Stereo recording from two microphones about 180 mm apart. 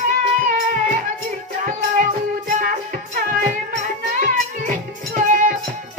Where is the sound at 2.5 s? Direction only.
50° right (ahead or behind).